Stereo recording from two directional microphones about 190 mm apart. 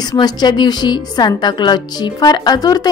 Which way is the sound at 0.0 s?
20° left (ahead or behind).